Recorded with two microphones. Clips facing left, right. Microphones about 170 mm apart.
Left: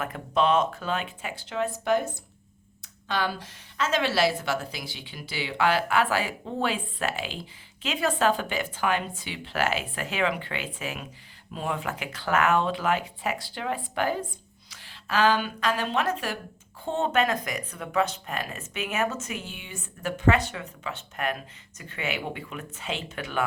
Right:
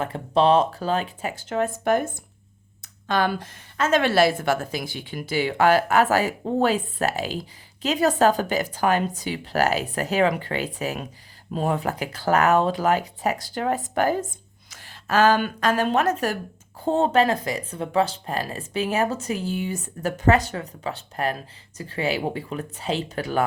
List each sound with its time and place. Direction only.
0.0 s a woman's voice: 30° right (ahead or behind)